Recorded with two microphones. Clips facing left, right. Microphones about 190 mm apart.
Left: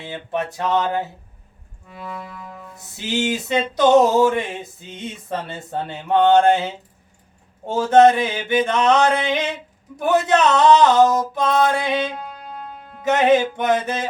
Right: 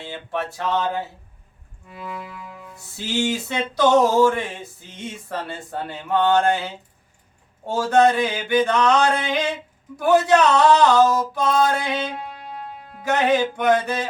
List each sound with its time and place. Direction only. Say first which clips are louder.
0.0 s a sound: left 2 dB; 20° left (ahead or behind)
1.9 s music: even; 5° right (ahead or behind)
2.7 s male singing: left 1 dB; 20° left (ahead or behind)
7.7 s male singing: left 4 dB; 20° left (ahead or behind)
12.4 s music: even; 5° right (ahead or behind)
13.1 s male singing: left 3 dB; 20° left (ahead or behind)